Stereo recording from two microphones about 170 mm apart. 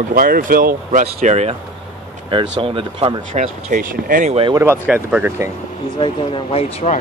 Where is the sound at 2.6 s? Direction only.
30° right (ahead or behind).